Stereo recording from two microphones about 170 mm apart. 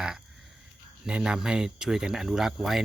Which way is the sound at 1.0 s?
5° right (ahead or behind).